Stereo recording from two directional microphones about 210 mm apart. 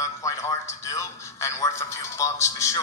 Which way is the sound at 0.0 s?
15° left (ahead or behind).